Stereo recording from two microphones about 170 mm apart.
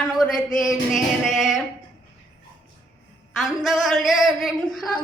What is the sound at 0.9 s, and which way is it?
Speech, centre (ahead or behind).